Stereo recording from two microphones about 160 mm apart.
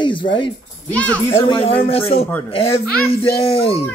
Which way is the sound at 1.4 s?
35° left (ahead or behind).